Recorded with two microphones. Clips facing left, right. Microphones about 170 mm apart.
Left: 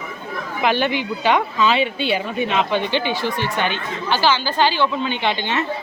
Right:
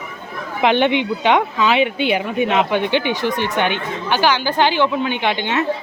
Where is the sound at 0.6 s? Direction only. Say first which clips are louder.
Right 4 dB; 20° right (ahead or behind).